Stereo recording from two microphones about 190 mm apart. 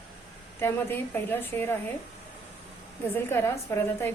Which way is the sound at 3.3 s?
10° left (ahead or behind).